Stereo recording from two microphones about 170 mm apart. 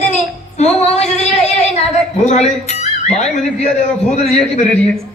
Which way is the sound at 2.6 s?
40° left (ahead or behind).